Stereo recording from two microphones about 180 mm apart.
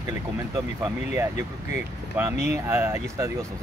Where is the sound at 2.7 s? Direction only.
15° right (ahead or behind).